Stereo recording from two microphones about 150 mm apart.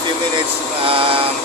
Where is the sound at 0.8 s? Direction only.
40° right (ahead or behind).